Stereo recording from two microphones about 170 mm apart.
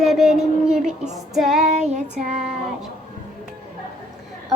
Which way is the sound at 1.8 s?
45° right (ahead or behind).